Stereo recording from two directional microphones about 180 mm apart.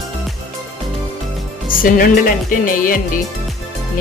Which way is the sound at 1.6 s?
50° left (ahead or behind).